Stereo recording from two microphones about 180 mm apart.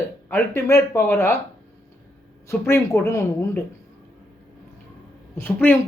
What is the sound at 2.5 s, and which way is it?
Speech, 15° left (ahead or behind).